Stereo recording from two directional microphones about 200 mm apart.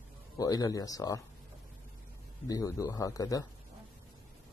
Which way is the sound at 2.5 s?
15° left (ahead or behind).